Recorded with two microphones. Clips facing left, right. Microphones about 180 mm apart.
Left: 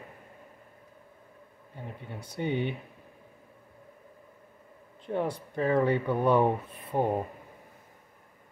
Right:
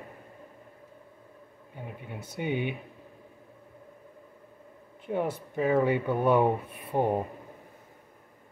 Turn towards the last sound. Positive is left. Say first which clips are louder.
# right 1 dB
turn(degrees=-15)  # may be behind; listen again after turning